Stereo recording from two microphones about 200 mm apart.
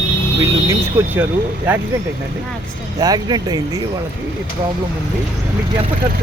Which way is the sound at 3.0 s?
20° right (ahead or behind).